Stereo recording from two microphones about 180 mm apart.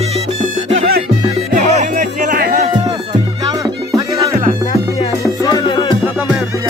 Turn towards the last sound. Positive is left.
turn(degrees=25)  # may be behind; listen again after turning